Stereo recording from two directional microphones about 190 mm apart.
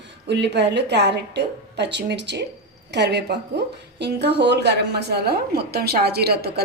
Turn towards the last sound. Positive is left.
turn(degrees=-55)  # may be behind; listen again after turning